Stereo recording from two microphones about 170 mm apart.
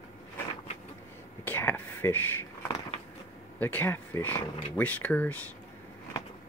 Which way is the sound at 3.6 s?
10° left (ahead or behind).